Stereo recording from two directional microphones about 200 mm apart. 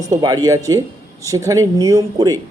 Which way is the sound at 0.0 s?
15° right (ahead or behind).